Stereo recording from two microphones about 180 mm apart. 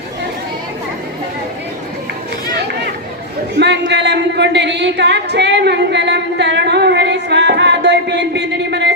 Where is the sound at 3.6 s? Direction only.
70° right (ahead or behind).